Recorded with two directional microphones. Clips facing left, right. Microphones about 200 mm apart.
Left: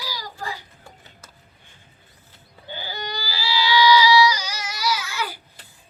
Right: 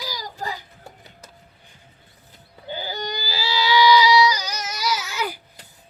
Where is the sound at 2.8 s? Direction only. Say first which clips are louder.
Right 1 dB; 20° right (ahead or behind).